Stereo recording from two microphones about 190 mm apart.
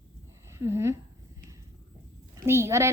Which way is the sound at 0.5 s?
15° right (ahead or behind).